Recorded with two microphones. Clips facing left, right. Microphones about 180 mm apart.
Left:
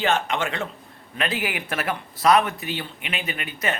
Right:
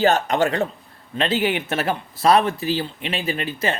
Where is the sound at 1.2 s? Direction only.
25° right (ahead or behind).